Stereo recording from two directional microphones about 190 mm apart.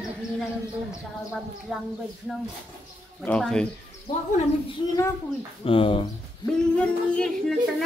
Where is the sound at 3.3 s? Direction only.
5° left (ahead or behind).